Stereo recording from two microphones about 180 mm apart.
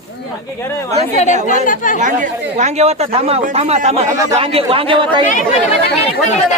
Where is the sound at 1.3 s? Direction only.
40° right (ahead or behind).